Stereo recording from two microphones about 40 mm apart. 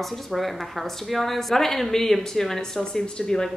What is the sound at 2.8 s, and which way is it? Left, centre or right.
Speech, left.